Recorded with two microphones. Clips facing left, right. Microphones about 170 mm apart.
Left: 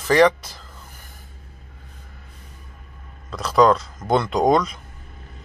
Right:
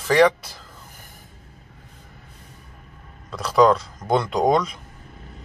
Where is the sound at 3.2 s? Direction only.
5° right (ahead or behind).